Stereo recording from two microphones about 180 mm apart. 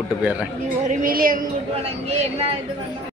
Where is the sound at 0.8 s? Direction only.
45° right (ahead or behind).